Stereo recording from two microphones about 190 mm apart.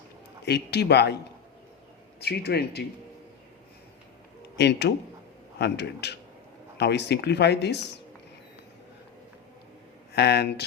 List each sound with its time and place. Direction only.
0.4 s speech: 60° left (ahead or behind)
2.2 s speech: 60° left (ahead or behind)
4.5 s speech: 60° left (ahead or behind)
10.1 s speech: 60° left (ahead or behind)